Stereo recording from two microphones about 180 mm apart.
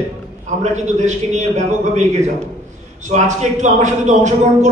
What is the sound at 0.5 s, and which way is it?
Speech, 40° right (ahead or behind).